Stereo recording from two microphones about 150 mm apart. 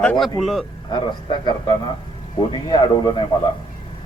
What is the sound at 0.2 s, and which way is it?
Speech, centre (ahead or behind).